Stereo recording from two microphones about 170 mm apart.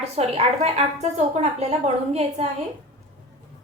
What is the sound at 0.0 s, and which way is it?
A woman's voice, 40° right (ahead or behind).